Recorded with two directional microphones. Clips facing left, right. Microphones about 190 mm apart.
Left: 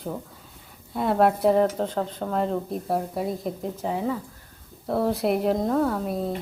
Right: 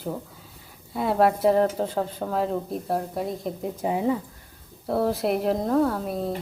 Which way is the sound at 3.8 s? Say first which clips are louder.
Right 3 dB; 15° right (ahead or behind).